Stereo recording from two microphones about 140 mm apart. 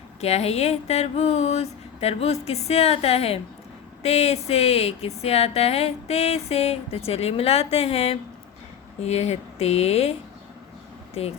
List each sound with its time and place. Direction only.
0.2 s speech: 50° left (ahead or behind)
11.2 s speech: 45° left (ahead or behind)